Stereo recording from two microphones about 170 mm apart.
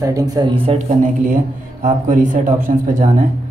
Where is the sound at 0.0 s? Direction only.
20° right (ahead or behind).